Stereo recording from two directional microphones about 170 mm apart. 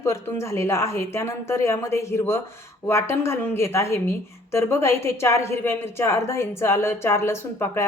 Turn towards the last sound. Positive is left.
turn(degrees=15)  # may be behind; listen again after turning